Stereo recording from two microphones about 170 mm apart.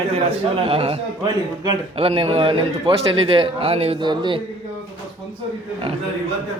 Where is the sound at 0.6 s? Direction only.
35° right (ahead or behind).